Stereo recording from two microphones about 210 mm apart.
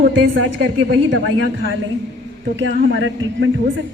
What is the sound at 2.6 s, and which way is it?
Speech, 60° right (ahead or behind).